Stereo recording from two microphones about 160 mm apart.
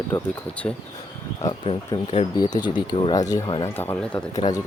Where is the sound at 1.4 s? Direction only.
30° left (ahead or behind).